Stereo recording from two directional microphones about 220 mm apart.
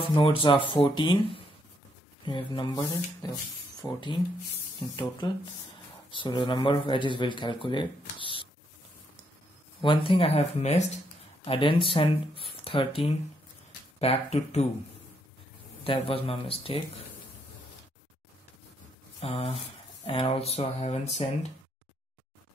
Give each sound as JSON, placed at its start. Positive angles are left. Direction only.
{"t": 0.0, "sound": "speech", "side_deg": 25}
{"t": 5.2, "sound": "speech", "side_deg": 20}
{"t": 9.8, "sound": "speech", "side_deg": 25}
{"t": 15.8, "sound": "speech", "side_deg": 25}
{"t": 19.1, "sound": "speech", "side_deg": 25}